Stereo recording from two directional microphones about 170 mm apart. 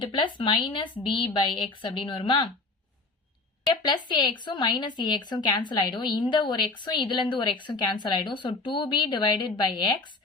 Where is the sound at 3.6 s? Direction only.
25° left (ahead or behind).